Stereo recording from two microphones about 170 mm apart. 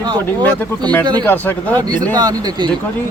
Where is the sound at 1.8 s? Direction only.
25° right (ahead or behind).